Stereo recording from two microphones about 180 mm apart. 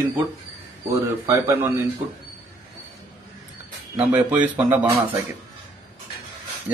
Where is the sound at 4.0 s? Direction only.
5° right (ahead or behind).